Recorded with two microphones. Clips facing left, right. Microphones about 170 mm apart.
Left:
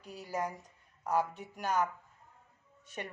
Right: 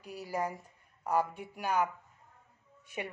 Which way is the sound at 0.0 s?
10° right (ahead or behind).